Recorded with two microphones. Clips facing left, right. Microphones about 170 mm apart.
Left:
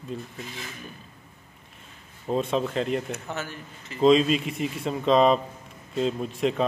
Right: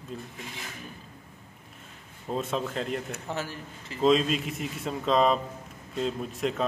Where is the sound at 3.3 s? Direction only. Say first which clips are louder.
Even; 30° right (ahead or behind).